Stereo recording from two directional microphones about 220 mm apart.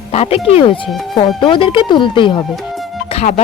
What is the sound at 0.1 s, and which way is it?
A woman's voice, 25° left (ahead or behind).